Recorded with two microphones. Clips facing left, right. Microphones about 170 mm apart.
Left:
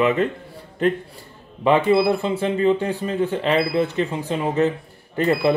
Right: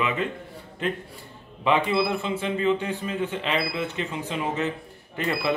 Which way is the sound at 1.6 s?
40° left (ahead or behind).